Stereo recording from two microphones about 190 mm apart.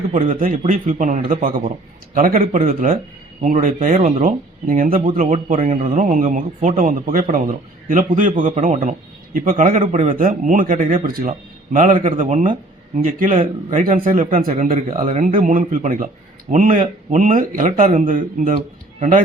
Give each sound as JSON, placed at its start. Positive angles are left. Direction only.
{"t": 0.3, "sound": "a man's voice", "side_deg": -45}
{"t": 5.2, "sound": "speech", "side_deg": -35}
{"t": 5.6, "sound": "a man's voice", "side_deg": -45}